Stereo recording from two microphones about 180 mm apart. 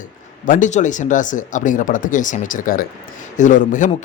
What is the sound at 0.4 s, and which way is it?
Speech, 45° left (ahead or behind).